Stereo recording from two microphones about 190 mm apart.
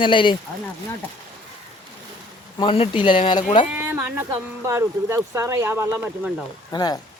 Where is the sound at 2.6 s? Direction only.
30° left (ahead or behind).